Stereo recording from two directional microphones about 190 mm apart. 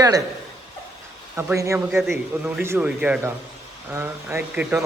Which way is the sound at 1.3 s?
10° right (ahead or behind).